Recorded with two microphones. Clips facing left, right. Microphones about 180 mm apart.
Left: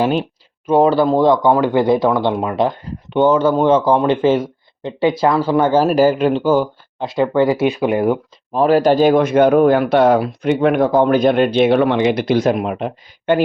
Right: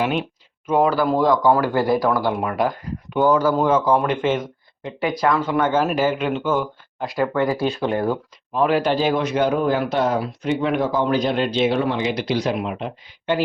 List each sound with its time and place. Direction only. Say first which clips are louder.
0.0 s speech: left 5 dB; 35° left (ahead or behind); by 8.2 s 15° left (ahead or behind)
8.5 s speech: left 6 dB; 40° left (ahead or behind)